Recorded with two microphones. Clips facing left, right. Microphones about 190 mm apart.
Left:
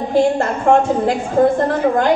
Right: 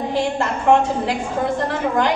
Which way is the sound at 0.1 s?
45° left (ahead or behind).